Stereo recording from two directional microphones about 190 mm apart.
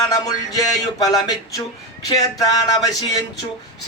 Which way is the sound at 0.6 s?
20° left (ahead or behind).